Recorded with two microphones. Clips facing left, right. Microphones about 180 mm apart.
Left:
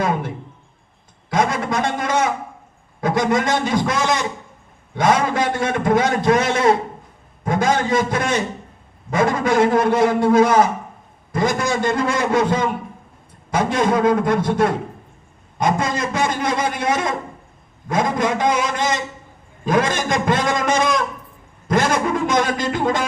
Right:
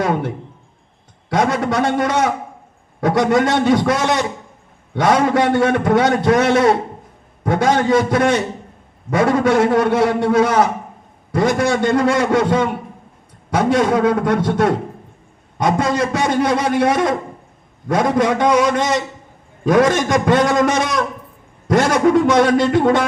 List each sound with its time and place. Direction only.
1.3 s a man's voice: 70° right (ahead or behind)